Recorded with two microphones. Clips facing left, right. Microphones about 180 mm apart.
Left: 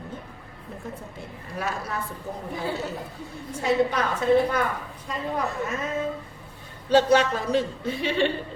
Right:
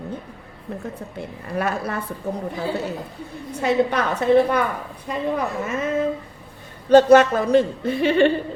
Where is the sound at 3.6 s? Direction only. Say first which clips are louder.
Right 3 dB; 65° right (ahead or behind).